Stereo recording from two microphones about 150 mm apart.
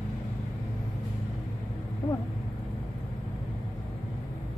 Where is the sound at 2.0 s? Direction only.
30° left (ahead or behind).